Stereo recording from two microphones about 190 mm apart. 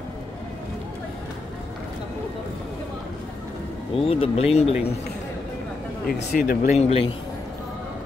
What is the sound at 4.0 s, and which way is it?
Speech, 30° left (ahead or behind).